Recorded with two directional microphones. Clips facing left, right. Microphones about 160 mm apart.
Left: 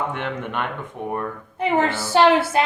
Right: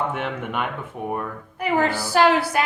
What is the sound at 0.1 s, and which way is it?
Speech, 5° right (ahead or behind).